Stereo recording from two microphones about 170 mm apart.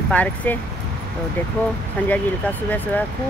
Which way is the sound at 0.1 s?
10° left (ahead or behind).